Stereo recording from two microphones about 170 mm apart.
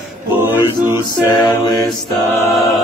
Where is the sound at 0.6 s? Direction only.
25° left (ahead or behind).